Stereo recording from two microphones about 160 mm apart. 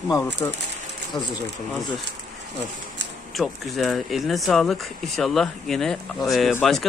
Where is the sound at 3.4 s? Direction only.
Centre (ahead or behind).